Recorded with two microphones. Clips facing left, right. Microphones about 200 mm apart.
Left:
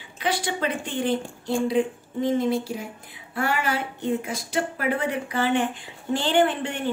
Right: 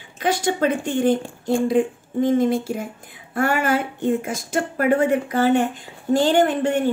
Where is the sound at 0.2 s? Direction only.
45° right (ahead or behind).